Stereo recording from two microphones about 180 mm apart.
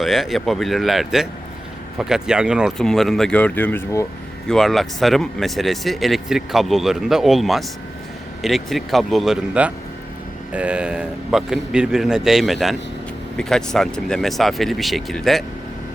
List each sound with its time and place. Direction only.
0.0 s speech: centre (ahead or behind)